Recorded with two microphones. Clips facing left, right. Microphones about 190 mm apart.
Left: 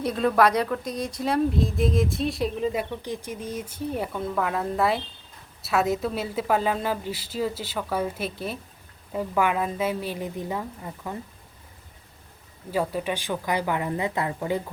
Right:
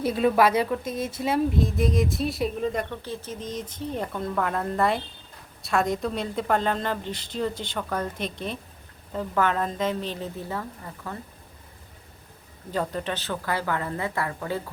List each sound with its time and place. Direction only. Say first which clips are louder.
0.0 s a woman's voice: even; 5° right (ahead or behind)
2.9 s speech: left 2 dB; 15° left (ahead or behind)
12.7 s speech: left 2 dB; 10° left (ahead or behind)